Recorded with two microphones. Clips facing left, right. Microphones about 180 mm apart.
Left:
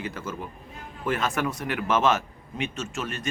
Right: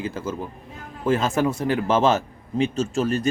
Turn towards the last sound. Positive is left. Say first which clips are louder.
# right 10 dB
turn(degrees=-35)  # may be behind; listen again after turning